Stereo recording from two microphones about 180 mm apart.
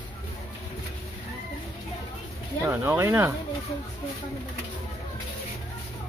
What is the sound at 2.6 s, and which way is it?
Speech, 10° right (ahead or behind).